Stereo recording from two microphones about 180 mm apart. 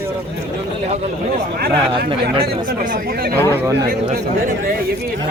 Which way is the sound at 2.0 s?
30° right (ahead or behind).